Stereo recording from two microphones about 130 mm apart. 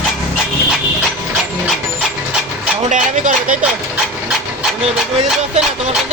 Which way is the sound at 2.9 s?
80° right.